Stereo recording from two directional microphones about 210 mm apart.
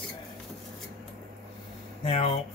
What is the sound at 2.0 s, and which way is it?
Speech, 30° left (ahead or behind).